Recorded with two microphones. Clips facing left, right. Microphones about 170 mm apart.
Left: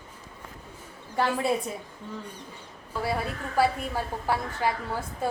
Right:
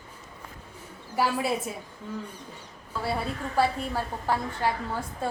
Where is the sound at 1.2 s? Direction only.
10° right (ahead or behind).